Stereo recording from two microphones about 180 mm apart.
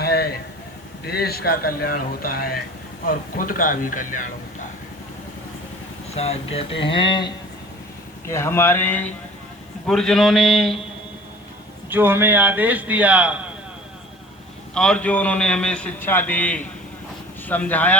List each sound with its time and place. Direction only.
0.0 s a sound: 60° left (ahead or behind)
1.0 s speech: 60° left (ahead or behind)
6.1 s speech: 35° left (ahead or behind)
8.3 s a man's voice: 15° left (ahead or behind)
11.9 s a man's voice: 10° right (ahead or behind)
14.8 s a man's voice: 5° left (ahead or behind)